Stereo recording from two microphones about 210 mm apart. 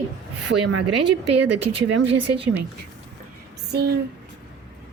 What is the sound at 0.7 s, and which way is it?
Speech, 70° right (ahead or behind).